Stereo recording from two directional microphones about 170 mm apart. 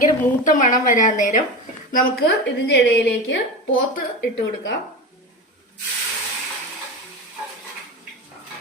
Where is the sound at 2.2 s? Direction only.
90° left.